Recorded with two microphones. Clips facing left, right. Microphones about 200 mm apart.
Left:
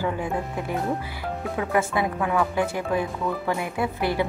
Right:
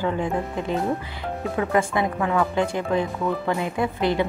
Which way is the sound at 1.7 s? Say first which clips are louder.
Right 1 dB; 5° left (ahead or behind).